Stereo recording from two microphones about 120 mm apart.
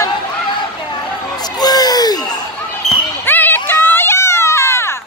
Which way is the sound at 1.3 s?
35° left (ahead or behind).